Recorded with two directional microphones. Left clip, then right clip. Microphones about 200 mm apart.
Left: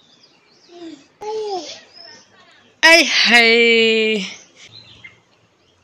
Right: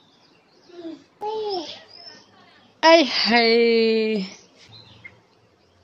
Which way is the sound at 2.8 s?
10° right (ahead or behind).